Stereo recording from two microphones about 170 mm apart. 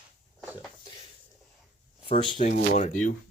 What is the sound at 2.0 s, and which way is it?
Speech, 30° left (ahead or behind).